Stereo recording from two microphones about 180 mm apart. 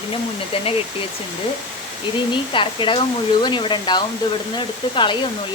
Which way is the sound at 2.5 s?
30° left (ahead or behind).